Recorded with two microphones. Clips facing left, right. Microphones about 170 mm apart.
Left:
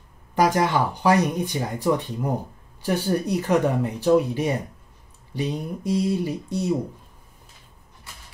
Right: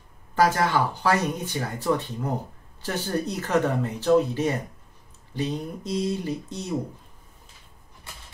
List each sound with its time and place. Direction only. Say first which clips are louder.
0.4 s speech: left 1 dB; 15° left (ahead or behind)